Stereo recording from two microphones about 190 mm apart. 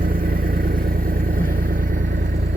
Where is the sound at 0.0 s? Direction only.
50° right (ahead or behind).